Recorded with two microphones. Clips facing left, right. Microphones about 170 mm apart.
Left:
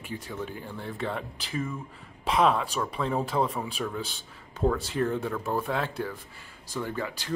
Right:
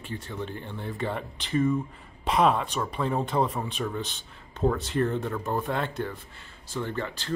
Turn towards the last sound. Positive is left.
turn(degrees=10)  # may be behind; listen again after turning